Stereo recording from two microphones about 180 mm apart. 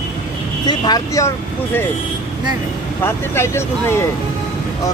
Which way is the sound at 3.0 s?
15° left (ahead or behind).